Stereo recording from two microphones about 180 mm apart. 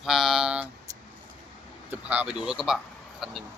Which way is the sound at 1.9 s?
10° right (ahead or behind).